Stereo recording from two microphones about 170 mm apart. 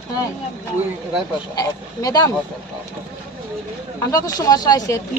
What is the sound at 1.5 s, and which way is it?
Speech, 20° left (ahead or behind).